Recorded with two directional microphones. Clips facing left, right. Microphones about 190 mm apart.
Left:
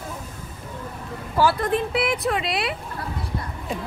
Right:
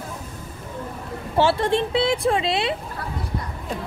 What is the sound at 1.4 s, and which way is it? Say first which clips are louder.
A woman's voice: right 1 dB; 25° right (ahead or behind).